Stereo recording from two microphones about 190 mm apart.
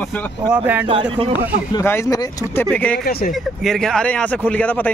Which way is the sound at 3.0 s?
55° left (ahead or behind).